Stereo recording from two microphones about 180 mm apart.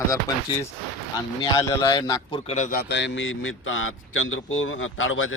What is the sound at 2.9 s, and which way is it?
A man's voice, 85° left.